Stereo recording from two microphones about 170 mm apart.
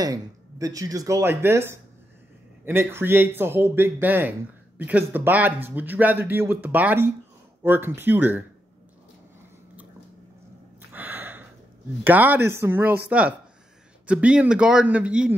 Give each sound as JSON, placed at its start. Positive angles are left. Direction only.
{"t": 0.0, "sound": "a man's voice", "side_deg": -20}
{"t": 10.9, "sound": "a sound", "side_deg": -10}
{"t": 12.0, "sound": "a man's voice", "side_deg": -10}